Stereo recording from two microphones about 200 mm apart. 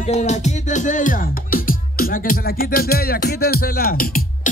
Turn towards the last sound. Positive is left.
turn(degrees=45)  # may be behind; listen again after turning